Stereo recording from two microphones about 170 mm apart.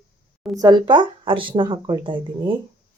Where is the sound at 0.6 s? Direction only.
25° right (ahead or behind).